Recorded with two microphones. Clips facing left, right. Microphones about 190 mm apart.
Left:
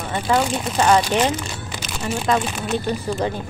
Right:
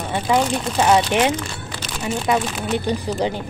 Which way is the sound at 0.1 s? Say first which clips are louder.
Right 1 dB; 10° right (ahead or behind).